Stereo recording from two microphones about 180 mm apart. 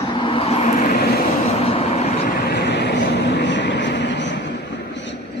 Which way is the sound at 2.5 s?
65° left (ahead or behind).